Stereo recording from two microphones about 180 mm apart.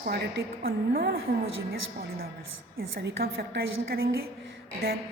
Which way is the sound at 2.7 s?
65° right (ahead or behind).